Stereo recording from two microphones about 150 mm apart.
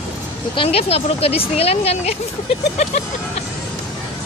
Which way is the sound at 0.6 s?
40° left (ahead or behind).